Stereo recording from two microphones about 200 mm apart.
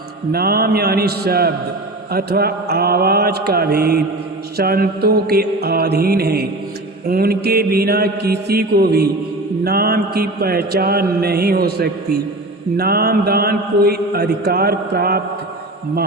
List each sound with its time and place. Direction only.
0.3 s mantra: 50° right (ahead or behind)